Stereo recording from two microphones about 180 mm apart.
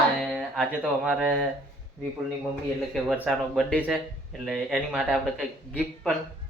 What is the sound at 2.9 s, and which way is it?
Speech, centre (ahead or behind).